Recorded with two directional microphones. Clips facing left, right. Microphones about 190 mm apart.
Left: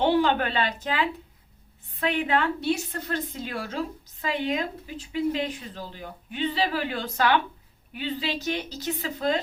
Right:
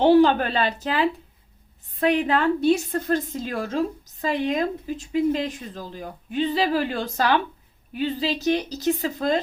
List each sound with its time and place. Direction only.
0.0 s a woman's voice: 40° right (ahead or behind)